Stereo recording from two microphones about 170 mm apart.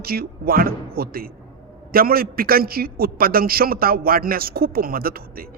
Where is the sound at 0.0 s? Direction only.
60° right (ahead or behind).